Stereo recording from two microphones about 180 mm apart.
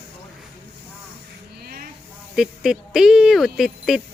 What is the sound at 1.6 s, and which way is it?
Snake, 55° right (ahead or behind).